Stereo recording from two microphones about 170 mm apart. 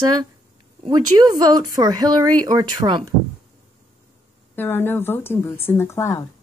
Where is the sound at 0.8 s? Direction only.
25° right (ahead or behind).